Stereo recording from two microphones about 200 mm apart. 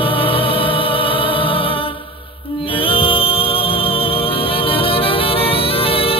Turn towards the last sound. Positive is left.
turn(degrees=30)  # may be behind; listen again after turning